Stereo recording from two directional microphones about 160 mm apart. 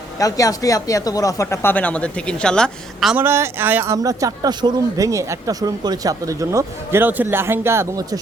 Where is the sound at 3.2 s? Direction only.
15° right (ahead or behind).